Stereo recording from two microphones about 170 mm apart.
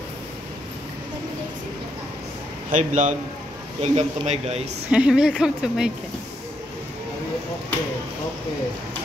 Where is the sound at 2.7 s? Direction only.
45° right (ahead or behind).